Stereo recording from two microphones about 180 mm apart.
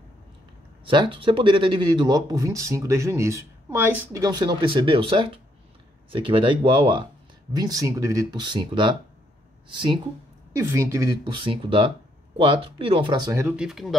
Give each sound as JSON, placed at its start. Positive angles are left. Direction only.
{"t": 0.8, "sound": "speech", "side_deg": -25}
{"t": 10.5, "sound": "speech", "side_deg": -15}
{"t": 13.6, "sound": "speech", "side_deg": 0}